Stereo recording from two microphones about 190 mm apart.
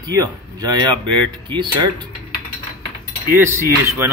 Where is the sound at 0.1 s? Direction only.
20° right (ahead or behind).